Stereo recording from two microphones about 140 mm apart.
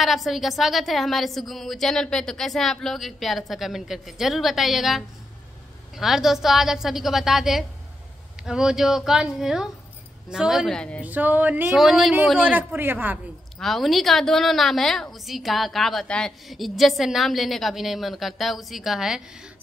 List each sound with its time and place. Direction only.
0.0 s a woman's voice: centre (ahead or behind)
11.0 s a woman's voice: 10° right (ahead or behind)
13.6 s a woman's voice: centre (ahead or behind)